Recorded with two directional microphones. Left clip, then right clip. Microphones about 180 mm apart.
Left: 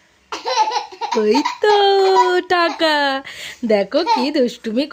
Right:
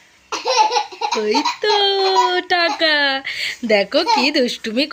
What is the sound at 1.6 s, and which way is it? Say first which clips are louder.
A woman's voice: left 5 dB; 45° left (ahead or behind).